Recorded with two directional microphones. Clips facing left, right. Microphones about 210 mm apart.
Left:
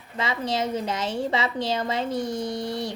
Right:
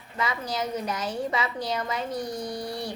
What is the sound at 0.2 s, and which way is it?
A woman's voice, 25° left (ahead or behind).